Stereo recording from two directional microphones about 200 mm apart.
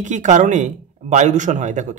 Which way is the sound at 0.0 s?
35° right (ahead or behind).